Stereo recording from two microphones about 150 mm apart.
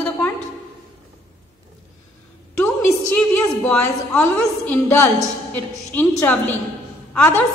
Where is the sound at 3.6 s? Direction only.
10° left (ahead or behind).